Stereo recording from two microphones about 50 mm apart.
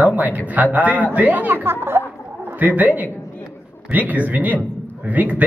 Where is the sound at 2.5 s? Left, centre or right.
Right.